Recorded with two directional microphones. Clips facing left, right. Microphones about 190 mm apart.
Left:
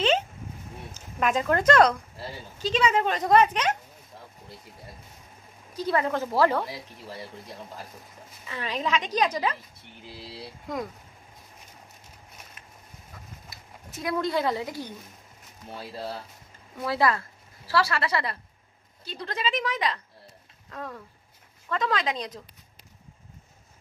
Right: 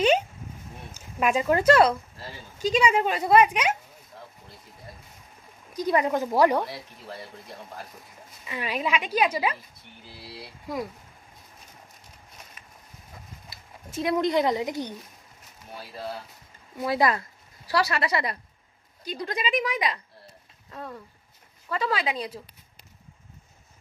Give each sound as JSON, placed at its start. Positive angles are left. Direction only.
{"t": 0.9, "sound": "a woman's voice", "side_deg": -10}
{"t": 5.7, "sound": "a woman's voice", "side_deg": -15}
{"t": 8.5, "sound": "a woman's voice", "side_deg": -10}
{"t": 10.7, "sound": "speech", "side_deg": -5}
{"t": 14.0, "sound": "a woman's voice", "side_deg": -20}
{"t": 16.8, "sound": "a woman's voice", "side_deg": -15}